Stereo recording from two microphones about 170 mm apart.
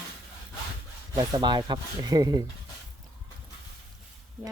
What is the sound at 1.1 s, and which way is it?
Speech, 25° right (ahead or behind).